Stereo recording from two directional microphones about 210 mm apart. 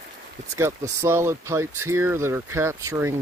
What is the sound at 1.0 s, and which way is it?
Speech, 15° right (ahead or behind).